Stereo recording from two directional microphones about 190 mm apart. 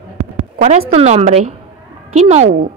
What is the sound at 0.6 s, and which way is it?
A woman's voice, 40° right (ahead or behind).